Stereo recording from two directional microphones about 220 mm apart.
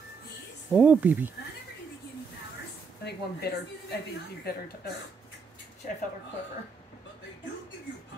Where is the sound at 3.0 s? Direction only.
45° left (ahead or behind).